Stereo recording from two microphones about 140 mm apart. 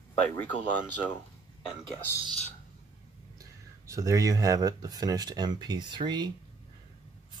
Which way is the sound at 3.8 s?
20° right (ahead or behind).